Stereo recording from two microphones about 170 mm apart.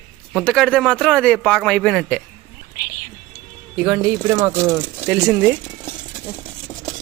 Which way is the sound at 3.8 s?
15° right (ahead or behind).